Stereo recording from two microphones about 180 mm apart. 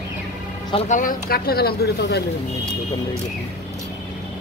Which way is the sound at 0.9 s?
50° left (ahead or behind).